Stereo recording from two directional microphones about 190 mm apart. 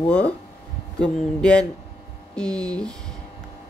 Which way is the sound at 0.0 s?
5° left (ahead or behind).